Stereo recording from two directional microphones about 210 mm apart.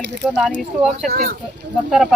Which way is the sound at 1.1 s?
45° right (ahead or behind).